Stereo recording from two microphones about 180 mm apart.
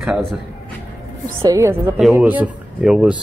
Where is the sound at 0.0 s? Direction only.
Centre (ahead or behind).